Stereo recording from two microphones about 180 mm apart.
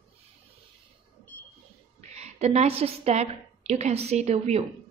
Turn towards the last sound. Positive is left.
turn(degrees=-40)  # may be behind; listen again after turning